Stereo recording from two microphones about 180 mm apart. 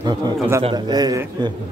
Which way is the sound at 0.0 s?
25° right (ahead or behind).